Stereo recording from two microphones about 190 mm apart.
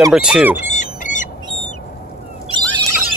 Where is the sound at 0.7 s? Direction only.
40° left (ahead or behind).